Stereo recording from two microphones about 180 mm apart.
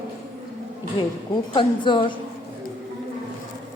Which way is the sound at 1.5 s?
25° left (ahead or behind).